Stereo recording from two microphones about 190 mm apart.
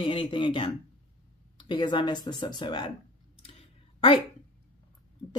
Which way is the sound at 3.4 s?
30° left (ahead or behind).